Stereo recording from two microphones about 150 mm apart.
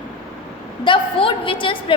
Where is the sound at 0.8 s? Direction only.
35° left (ahead or behind).